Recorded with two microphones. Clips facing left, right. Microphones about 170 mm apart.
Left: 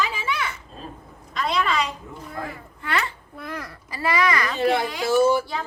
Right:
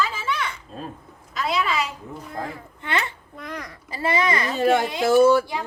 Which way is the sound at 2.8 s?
25° right (ahead or behind).